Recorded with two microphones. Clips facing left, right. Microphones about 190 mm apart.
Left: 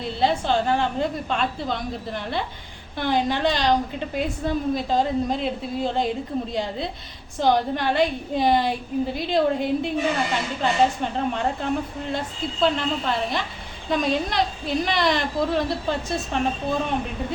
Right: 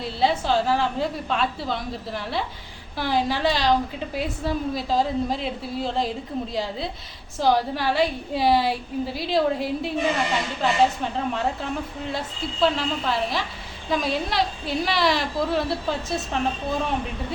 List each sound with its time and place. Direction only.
0.0 s a woman's voice: centre (ahead or behind)
12.6 s a woman's voice: centre (ahead or behind)